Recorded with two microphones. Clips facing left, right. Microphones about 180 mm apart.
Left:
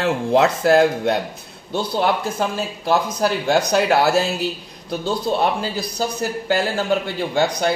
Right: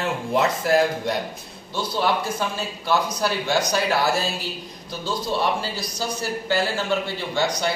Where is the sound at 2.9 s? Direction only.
50° left (ahead or behind); by 4.3 s 70° left (ahead or behind).